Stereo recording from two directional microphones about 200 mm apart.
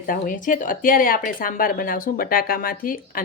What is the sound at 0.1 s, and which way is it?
Speech, 40° left (ahead or behind).